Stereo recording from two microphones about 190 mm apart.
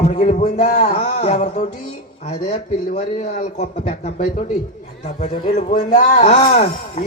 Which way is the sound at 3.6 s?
40° left (ahead or behind).